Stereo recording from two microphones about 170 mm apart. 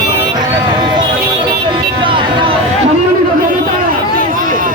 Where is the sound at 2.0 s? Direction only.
30° right (ahead or behind).